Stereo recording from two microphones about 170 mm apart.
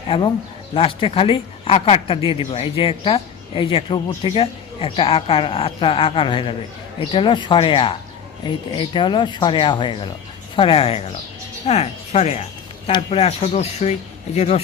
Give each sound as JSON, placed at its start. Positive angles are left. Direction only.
{"t": 0.1, "sound": "speech", "side_deg": 30}